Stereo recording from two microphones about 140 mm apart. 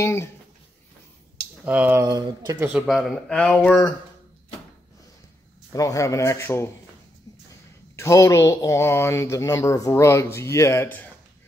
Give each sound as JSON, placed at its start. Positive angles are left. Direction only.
{"t": 0.0, "sound": "speech", "side_deg": 20}
{"t": 1.6, "sound": "speech", "side_deg": -10}
{"t": 2.9, "sound": "speech", "side_deg": 0}
{"t": 5.7, "sound": "speech", "side_deg": 25}
{"t": 7.9, "sound": "speech", "side_deg": 20}